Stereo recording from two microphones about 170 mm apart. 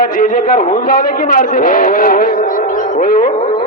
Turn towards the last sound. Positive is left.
turn(degrees=55)  # may be behind; listen again after turning